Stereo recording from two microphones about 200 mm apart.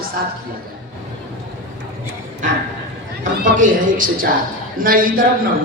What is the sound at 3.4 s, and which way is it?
A man's voice, 40° right (ahead or behind).